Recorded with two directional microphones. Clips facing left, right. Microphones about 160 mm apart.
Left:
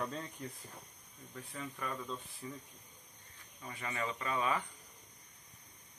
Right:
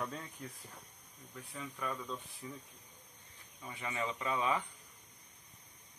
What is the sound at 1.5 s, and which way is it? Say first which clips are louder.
Speech: right 1 dB; centre (ahead or behind).